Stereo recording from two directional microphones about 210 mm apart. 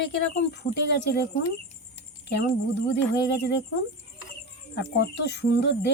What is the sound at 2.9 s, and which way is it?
Speech, 55° left (ahead or behind).